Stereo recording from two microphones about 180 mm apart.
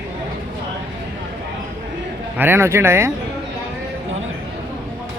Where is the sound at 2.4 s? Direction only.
15° right (ahead or behind).